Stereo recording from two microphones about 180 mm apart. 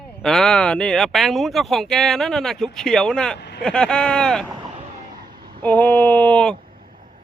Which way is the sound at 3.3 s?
70° left (ahead or behind).